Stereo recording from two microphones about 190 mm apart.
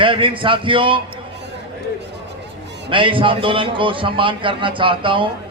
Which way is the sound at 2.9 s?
25° right (ahead or behind).